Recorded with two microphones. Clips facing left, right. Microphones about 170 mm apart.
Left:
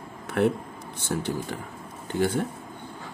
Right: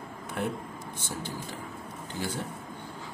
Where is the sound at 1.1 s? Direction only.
65° left (ahead or behind).